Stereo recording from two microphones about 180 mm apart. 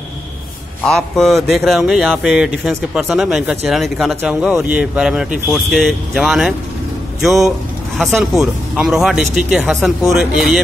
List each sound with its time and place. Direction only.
0.8 s speech: centre (ahead or behind)